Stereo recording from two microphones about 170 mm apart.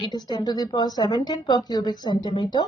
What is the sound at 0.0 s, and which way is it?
A woman's voice, 25° left (ahead or behind).